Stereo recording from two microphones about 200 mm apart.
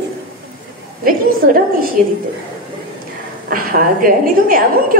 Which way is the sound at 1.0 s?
45° right (ahead or behind).